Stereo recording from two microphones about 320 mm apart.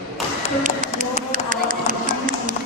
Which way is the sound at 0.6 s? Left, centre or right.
Right.